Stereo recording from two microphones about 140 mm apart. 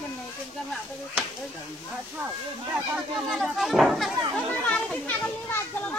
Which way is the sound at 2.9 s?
Centre (ahead or behind).